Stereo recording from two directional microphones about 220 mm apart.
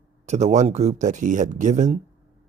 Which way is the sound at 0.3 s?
30° right (ahead or behind).